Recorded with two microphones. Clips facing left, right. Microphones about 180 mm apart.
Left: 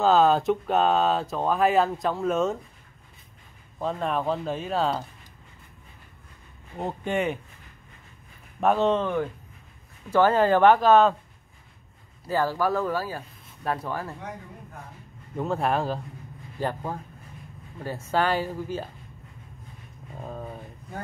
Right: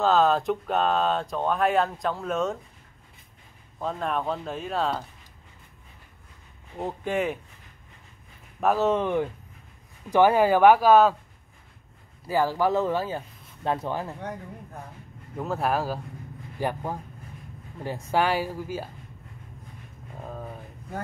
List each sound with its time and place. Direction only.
0.0 s speech: centre (ahead or behind)
3.8 s speech: centre (ahead or behind)
6.8 s speech: centre (ahead or behind)
8.5 s speech: 5° right (ahead or behind)
12.3 s speech: 15° right (ahead or behind)
15.3 s speech: centre (ahead or behind)
20.2 s a sound: centre (ahead or behind)